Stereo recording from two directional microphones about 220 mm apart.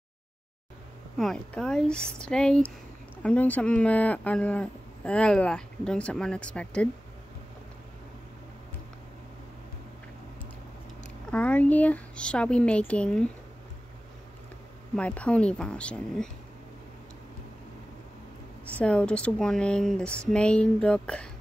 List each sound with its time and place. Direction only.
1.1 s speech: centre (ahead or behind)
11.2 s speech: 5° left (ahead or behind)
15.0 s speech: 5° left (ahead or behind)
18.8 s speech: 5° left (ahead or behind)